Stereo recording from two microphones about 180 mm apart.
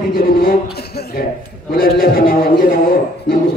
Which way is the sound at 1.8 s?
55° left (ahead or behind).